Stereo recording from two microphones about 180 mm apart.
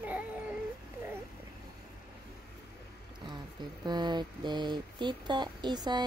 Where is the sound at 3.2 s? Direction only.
25° right (ahead or behind).